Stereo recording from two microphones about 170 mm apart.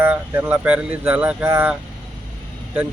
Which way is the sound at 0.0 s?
10° right (ahead or behind).